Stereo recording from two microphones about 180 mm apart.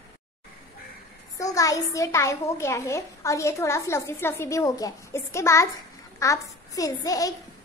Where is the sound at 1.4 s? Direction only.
20° left (ahead or behind).